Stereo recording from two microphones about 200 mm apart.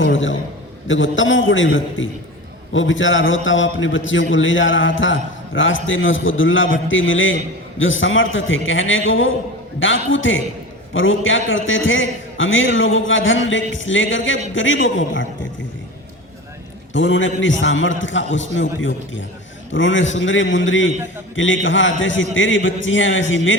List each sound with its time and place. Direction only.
0.0 s a man's voice: 75° left (ahead or behind)
16.9 s a man's voice: 70° left (ahead or behind)